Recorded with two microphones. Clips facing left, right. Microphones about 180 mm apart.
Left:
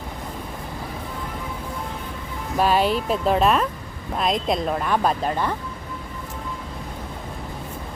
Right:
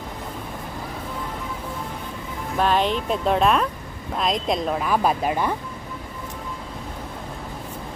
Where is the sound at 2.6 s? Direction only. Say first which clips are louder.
Left 1 dB; 5° left (ahead or behind); by 5.5 s 10° right (ahead or behind).